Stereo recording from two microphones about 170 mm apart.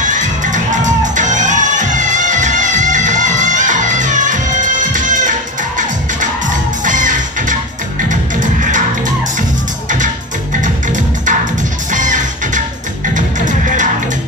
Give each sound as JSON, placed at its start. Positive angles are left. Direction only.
{"t": 0.0, "sound": "music", "side_deg": -45}
{"t": 10.6, "sound": "music", "side_deg": -50}